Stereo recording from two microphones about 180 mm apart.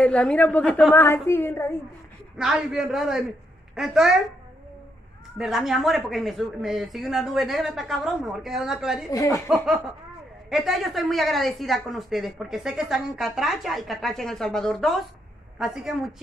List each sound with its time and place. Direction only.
0.0 s a woman's voice: 5° left (ahead or behind)
2.4 s speech: 5° right (ahead or behind)
5.4 s speech: centre (ahead or behind)
9.1 s a woman's voice: 15° left (ahead or behind)
10.5 s speech: centre (ahead or behind)